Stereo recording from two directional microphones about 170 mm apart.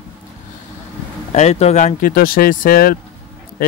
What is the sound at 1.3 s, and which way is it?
Speech, 40° left (ahead or behind).